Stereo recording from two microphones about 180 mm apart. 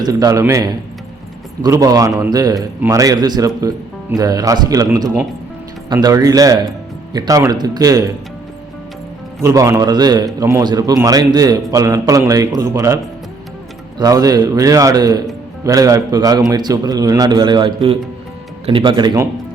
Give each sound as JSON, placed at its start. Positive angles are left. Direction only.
{"t": 0.0, "sound": "a man's voice", "side_deg": -20}
{"t": 9.4, "sound": "a man's voice", "side_deg": -15}
{"t": 14.0, "sound": "a man's voice", "side_deg": -20}